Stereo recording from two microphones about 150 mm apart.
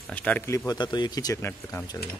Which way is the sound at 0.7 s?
30° left (ahead or behind).